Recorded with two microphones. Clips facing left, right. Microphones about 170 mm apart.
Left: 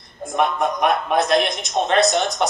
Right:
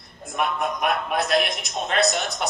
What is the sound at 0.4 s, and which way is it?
Speech, 35° left (ahead or behind).